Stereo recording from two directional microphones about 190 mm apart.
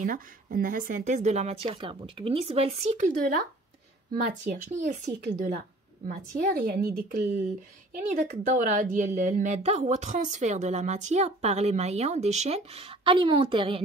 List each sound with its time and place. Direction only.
0.0 s a woman's voice: 45° right (ahead or behind)
6.0 s a woman's voice: 50° right (ahead or behind); by 13.8 s 30° right (ahead or behind)